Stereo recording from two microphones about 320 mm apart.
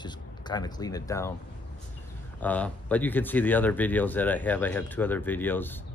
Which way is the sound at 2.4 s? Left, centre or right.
Centre.